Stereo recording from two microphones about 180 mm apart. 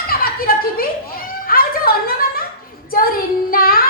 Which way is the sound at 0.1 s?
55° left (ahead or behind).